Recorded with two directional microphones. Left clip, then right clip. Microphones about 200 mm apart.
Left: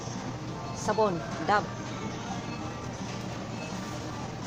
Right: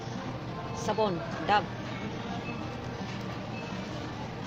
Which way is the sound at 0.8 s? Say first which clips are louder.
Left 3 dB; 30° left (ahead or behind).